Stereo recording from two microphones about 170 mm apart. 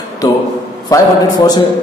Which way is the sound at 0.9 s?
20° left (ahead or behind).